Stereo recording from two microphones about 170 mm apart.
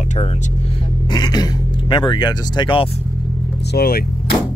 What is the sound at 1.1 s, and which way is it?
Speech, 25° left (ahead or behind).